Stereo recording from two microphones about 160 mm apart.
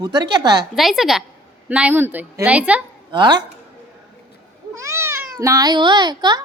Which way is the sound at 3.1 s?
30° right (ahead or behind).